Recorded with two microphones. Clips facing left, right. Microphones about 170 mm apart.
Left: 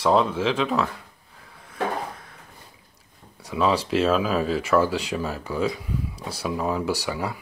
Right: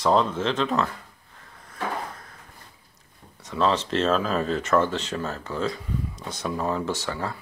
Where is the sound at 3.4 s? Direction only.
10° left (ahead or behind).